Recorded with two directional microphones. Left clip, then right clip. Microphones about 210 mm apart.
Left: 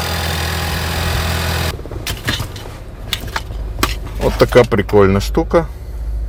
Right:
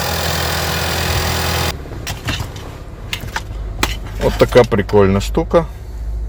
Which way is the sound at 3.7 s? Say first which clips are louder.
Left 1 dB; 20° left (ahead or behind).